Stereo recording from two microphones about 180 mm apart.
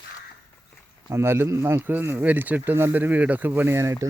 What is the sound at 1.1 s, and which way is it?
Speech, 15° right (ahead or behind).